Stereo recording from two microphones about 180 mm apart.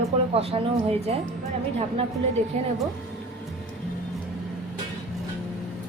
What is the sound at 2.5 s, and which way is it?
Speech, 40° right (ahead or behind).